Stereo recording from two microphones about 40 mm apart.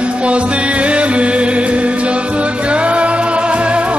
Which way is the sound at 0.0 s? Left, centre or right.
Right.